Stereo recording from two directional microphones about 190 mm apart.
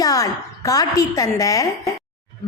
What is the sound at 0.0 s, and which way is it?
A woman's voice, 20° left (ahead or behind).